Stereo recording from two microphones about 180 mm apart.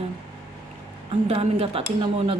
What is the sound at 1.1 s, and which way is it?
Speech, 30° right (ahead or behind).